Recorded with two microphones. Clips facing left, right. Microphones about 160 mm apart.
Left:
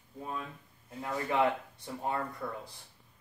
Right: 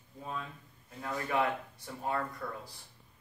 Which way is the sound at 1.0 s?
20° left (ahead or behind).